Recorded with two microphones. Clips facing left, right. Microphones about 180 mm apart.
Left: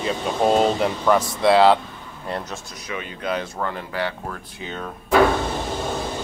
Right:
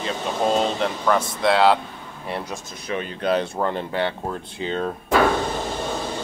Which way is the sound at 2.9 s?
35° right (ahead or behind).